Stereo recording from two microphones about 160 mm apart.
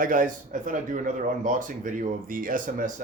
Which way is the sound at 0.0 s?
60° right (ahead or behind).